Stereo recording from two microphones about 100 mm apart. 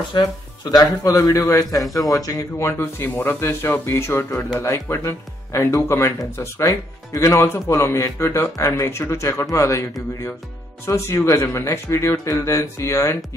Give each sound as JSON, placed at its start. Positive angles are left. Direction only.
{"t": 0.1, "sound": "speech", "side_deg": 45}
{"t": 1.0, "sound": "a man's voice", "side_deg": 35}